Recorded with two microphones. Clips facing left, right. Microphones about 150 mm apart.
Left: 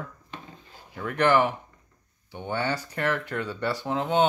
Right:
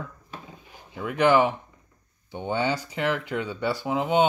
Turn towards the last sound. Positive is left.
turn(degrees=-15)  # may be behind; listen again after turning